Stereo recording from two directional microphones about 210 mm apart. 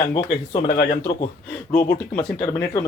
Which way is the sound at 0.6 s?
45° left (ahead or behind).